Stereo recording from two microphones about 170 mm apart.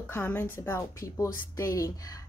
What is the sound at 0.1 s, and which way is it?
A woman's voice, 10° left (ahead or behind).